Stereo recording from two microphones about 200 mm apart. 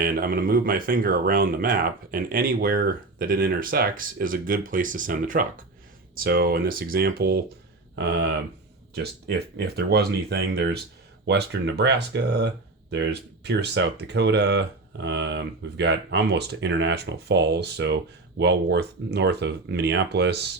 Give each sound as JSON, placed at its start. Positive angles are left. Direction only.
{"t": 0.0, "sound": "speech", "side_deg": -45}